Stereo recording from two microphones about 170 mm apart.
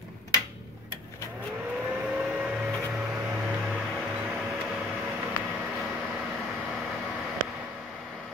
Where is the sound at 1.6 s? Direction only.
5° right (ahead or behind).